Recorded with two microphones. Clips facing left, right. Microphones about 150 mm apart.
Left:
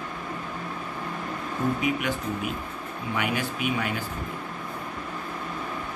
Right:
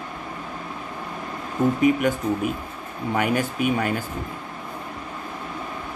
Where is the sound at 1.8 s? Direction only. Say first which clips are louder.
Right 7 dB; 45° right (ahead or behind).